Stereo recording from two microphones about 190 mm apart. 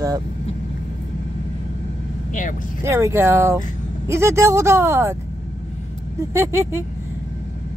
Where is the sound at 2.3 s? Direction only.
40° left (ahead or behind).